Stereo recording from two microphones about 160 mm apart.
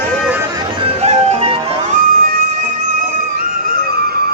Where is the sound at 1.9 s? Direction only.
65° right (ahead or behind).